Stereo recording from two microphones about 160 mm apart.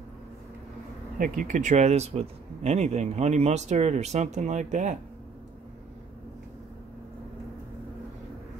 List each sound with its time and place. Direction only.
1.1 s speech: 60° right (ahead or behind)